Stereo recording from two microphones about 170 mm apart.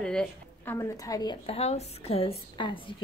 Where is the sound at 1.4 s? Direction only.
35° left (ahead or behind).